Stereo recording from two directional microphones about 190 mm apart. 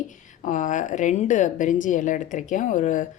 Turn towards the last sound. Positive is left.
turn(degrees=40)  # may be behind; listen again after turning